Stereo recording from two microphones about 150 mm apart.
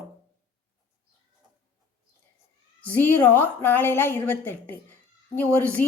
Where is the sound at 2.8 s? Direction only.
10° left (ahead or behind).